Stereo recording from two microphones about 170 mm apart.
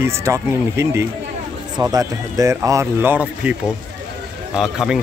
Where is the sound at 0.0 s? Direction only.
15° right (ahead or behind).